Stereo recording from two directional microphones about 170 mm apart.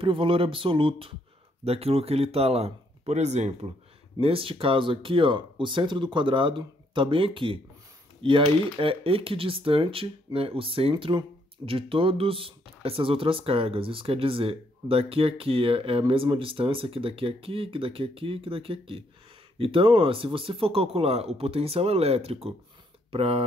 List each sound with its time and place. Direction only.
0.0 s speech: 30° right (ahead or behind)